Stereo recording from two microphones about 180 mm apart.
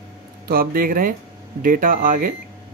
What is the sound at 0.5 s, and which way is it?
Speech, 55° right (ahead or behind).